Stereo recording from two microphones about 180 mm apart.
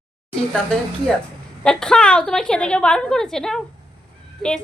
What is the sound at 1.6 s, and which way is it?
A woman's voice, 5° left (ahead or behind).